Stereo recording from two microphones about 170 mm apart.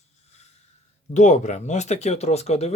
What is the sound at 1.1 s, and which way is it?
Speech, 45° left (ahead or behind).